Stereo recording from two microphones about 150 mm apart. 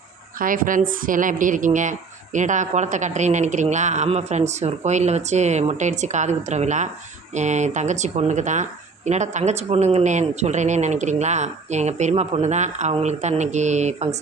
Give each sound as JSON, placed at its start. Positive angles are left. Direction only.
{"t": 0.3, "sound": "a woman's voice", "side_deg": -65}